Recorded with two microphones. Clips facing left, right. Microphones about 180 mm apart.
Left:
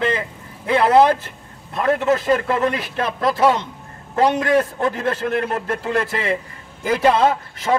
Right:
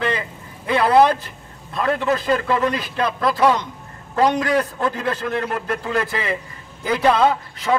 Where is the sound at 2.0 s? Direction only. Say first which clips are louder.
Left 2 dB; 25° left (ahead or behind).